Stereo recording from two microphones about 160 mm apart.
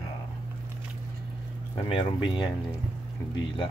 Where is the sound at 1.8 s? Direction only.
30° left (ahead or behind).